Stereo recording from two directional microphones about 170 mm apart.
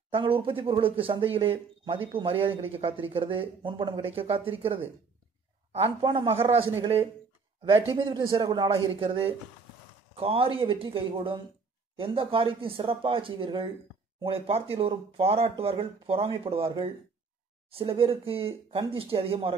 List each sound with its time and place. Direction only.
0.1 s speech: 30° right (ahead or behind)